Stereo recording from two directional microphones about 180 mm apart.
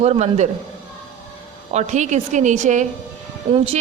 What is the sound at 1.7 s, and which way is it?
A woman's voice, 40° right (ahead or behind).